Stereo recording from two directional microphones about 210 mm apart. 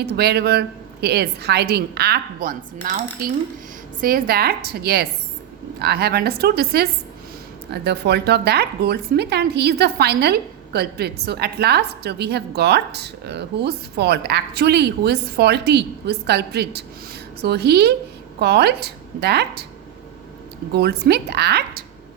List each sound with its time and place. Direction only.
0.0 s a woman's voice: 50° right (ahead or behind)
20.7 s a woman's voice: 50° right (ahead or behind)